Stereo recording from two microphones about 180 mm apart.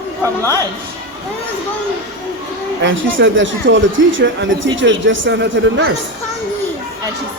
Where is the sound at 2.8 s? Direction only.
90° right.